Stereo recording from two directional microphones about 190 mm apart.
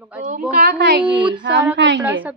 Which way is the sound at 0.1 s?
5° right (ahead or behind).